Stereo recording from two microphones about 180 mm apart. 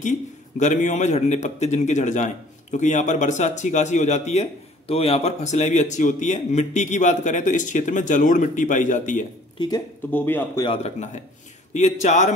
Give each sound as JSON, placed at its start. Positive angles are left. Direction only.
{"t": 0.6, "sound": "a man's voice", "side_deg": 45}
{"t": 10.1, "sound": "speech", "side_deg": 10}
{"t": 10.6, "sound": "a man's voice", "side_deg": 35}